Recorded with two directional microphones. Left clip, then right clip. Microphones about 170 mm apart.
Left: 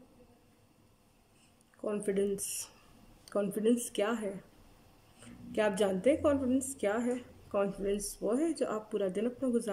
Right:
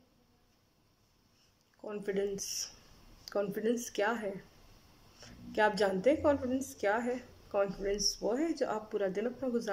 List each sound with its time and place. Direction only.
1.9 s a woman's voice: 20° left (ahead or behind)